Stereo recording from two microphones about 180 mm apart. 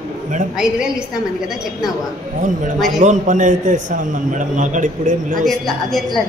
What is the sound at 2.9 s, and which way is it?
A man's voice, 40° right (ahead or behind).